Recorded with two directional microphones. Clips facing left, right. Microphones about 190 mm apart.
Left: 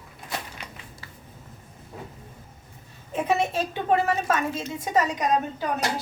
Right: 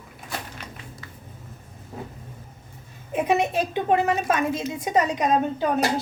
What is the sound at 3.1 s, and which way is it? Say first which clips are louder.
A woman's voice: right 2 dB; 15° right (ahead or behind).